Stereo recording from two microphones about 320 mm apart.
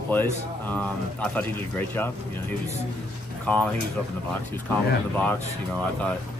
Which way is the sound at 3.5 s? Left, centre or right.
Centre.